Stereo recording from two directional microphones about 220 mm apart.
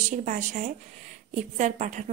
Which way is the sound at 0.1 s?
35° right (ahead or behind).